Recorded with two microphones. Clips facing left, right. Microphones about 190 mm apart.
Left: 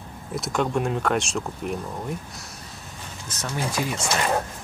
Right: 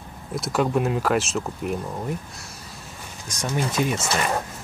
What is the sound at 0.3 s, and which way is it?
Speech, centre (ahead or behind).